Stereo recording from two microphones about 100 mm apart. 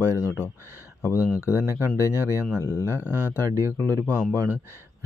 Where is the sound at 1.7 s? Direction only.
30° left (ahead or behind).